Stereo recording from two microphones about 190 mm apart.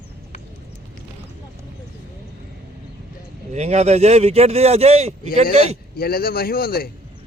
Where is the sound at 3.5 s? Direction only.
35° right (ahead or behind).